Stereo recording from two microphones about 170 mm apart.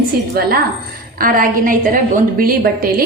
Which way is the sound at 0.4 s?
65° right (ahead or behind).